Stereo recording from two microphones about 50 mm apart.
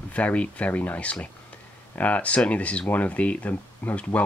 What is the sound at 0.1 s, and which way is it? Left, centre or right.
Speech, left.